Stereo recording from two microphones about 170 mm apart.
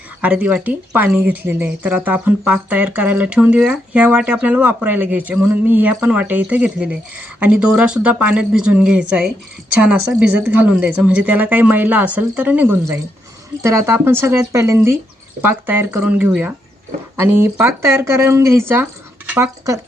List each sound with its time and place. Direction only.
0.2 s speech: 10° right (ahead or behind)